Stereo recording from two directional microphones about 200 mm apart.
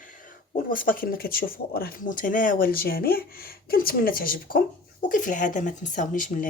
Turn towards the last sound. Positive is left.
turn(degrees=40)  # may be behind; listen again after turning